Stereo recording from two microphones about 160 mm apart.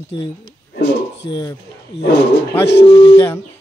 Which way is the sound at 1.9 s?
90° left.